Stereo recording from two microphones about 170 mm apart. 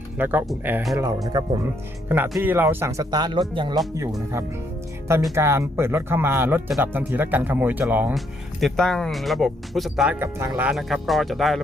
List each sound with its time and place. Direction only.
0.2 s speech: 10° right (ahead or behind)
0.9 s speech: 20° right (ahead or behind)
3.9 s speech: 15° right (ahead or behind)
8.6 s speech: centre (ahead or behind)
10.2 s speech: 15° right (ahead or behind)
10.7 s speech: centre (ahead or behind)